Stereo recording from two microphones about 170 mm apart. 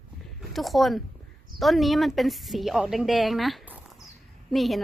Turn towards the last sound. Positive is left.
turn(degrees=0)  # may be behind; listen again after turning